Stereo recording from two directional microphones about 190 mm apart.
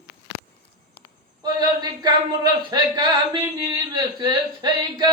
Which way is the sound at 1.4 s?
20° right (ahead or behind).